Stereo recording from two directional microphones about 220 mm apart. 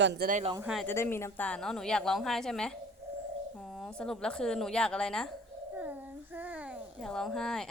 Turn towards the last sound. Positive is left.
turn(degrees=0)  # may be behind; listen again after turning